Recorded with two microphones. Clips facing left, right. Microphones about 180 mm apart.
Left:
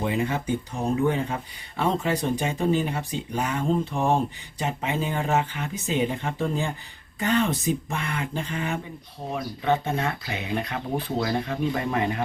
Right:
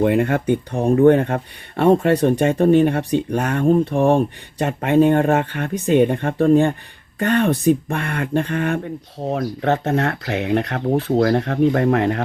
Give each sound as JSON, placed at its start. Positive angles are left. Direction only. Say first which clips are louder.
{"t": 0.0, "sound": "speech", "louder": "right 9 dB", "side_deg": -65}